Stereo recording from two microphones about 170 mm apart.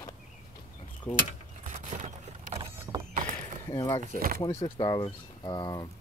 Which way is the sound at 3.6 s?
15° left (ahead or behind).